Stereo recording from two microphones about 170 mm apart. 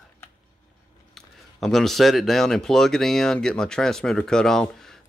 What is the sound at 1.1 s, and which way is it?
Speech, centre (ahead or behind).